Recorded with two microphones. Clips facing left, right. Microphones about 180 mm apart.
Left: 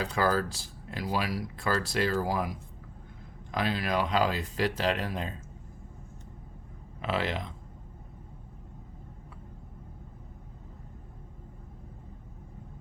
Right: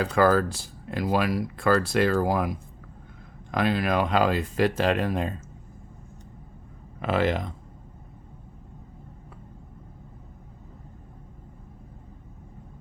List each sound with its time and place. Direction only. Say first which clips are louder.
0.0 s speech: right 7 dB; 55° right (ahead or behind)
7.0 s speech: right 7 dB; 50° right (ahead or behind)